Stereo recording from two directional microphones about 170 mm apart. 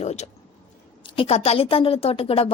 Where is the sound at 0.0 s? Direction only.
40° left (ahead or behind).